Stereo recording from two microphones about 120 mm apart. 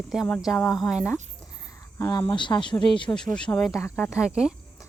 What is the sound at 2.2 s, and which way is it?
Speech, 40° left (ahead or behind).